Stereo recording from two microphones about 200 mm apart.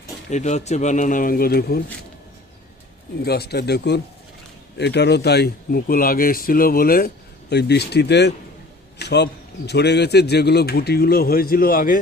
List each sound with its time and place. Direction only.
0.3 s a man's voice: 35° left (ahead or behind)
3.2 s a man's voice: 55° left (ahead or behind)